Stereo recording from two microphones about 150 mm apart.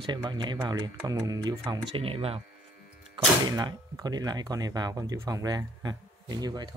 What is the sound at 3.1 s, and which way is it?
Speech, 25° right (ahead or behind).